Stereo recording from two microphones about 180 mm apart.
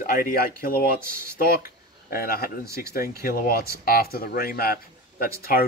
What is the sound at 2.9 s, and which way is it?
Speech, 55° left (ahead or behind).